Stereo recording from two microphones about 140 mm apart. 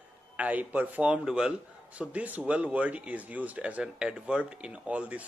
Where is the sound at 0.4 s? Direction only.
10° right (ahead or behind).